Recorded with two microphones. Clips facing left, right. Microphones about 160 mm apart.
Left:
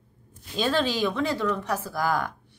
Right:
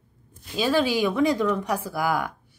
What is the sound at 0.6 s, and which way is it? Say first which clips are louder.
Speech: right 3 dB; 10° right (ahead or behind).